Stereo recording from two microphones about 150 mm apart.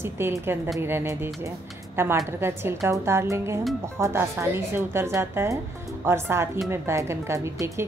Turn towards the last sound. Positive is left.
turn(degrees=-15)  # may be behind; listen again after turning